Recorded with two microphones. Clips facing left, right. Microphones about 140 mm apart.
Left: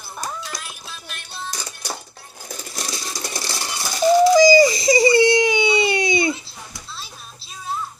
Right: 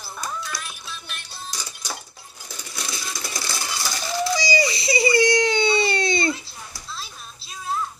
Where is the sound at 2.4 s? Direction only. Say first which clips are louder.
Left 4 dB; 50° left (ahead or behind); by 3.8 s 30° left (ahead or behind).